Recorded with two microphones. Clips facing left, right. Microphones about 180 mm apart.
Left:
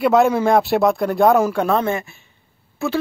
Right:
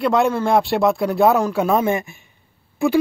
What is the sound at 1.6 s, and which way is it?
Speech, 15° right (ahead or behind).